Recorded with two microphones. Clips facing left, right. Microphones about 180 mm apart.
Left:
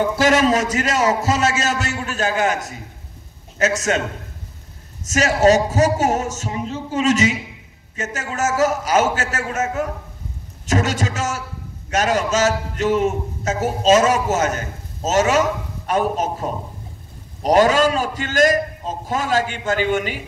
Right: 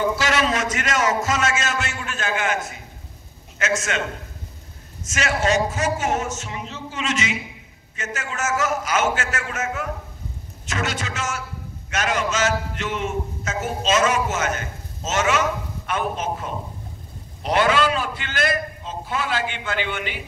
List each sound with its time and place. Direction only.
0.2 s a man's voice: 45° left (ahead or behind)
5.0 s a man's voice: 40° left (ahead or behind)